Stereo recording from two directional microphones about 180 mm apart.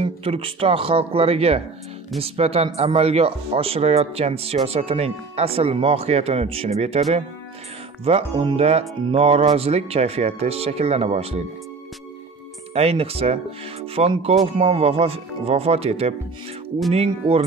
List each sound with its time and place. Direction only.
0.0 s speech: 30° right (ahead or behind)
12.7 s speech: 35° right (ahead or behind)